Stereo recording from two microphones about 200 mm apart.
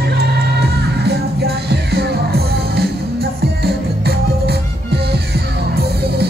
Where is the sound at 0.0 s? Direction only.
55° right (ahead or behind).